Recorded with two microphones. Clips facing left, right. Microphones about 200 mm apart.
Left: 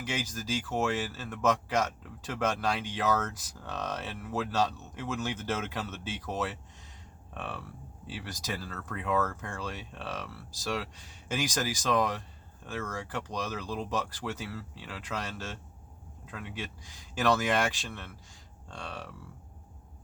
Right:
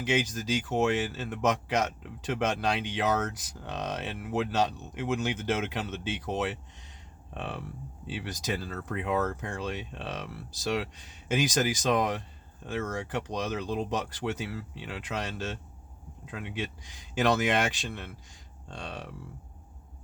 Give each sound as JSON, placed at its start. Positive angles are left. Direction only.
{"t": 0.0, "sound": "speech", "side_deg": -20}